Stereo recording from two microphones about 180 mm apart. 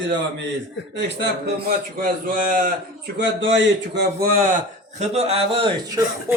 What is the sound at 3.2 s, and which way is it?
A man's voice, 90° right.